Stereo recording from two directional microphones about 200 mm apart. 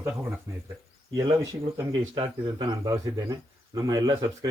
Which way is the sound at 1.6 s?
25° right (ahead or behind).